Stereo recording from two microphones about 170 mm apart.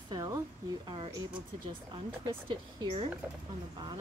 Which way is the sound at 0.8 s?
25° right (ahead or behind).